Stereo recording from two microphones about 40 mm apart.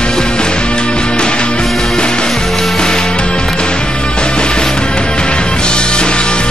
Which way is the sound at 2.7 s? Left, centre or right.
Centre.